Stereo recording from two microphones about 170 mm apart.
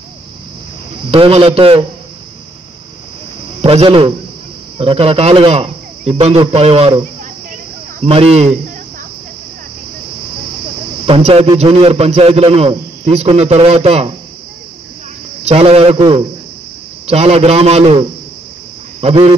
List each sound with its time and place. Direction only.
1.1 s a man's voice: 35° right (ahead or behind)
3.6 s a man's voice: 35° right (ahead or behind)
8.0 s a man's voice: 35° right (ahead or behind)
11.1 s a man's voice: 35° right (ahead or behind)
15.4 s a man's voice: 35° right (ahead or behind)